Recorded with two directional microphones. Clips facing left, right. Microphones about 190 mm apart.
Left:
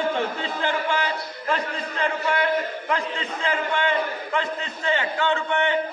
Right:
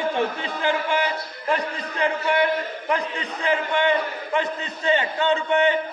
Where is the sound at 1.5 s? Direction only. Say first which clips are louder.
Right 2 dB; 15° right (ahead or behind).